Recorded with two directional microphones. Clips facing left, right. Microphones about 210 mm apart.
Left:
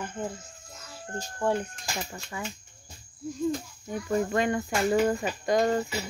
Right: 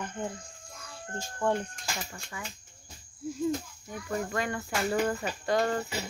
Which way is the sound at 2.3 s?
25° left (ahead or behind).